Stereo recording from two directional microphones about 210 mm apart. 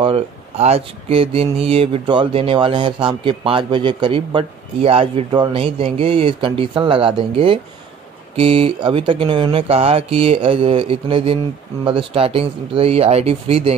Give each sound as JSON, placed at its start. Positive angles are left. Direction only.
{"t": 0.0, "sound": "speech", "side_deg": -30}